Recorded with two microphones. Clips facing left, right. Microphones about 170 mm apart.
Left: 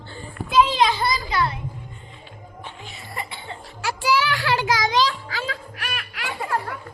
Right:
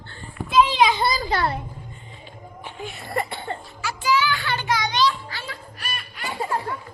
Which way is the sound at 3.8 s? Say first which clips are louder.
Left 1 dB; 75° left (ahead or behind).